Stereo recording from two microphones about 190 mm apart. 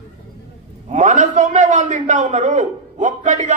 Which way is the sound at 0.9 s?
40° right (ahead or behind).